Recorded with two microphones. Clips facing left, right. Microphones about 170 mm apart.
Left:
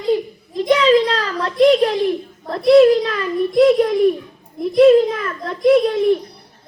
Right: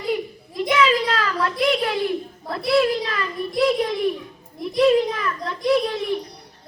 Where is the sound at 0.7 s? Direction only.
35° left (ahead or behind).